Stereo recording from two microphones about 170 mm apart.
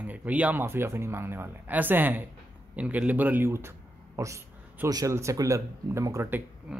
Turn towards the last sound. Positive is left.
turn(degrees=-10)  # may be behind; listen again after turning